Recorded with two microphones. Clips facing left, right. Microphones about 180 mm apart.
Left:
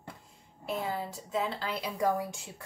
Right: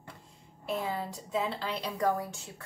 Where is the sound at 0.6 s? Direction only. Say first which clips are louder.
Even; centre (ahead or behind).